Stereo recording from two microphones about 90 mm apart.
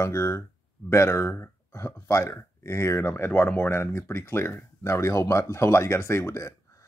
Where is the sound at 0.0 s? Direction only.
35° left (ahead or behind).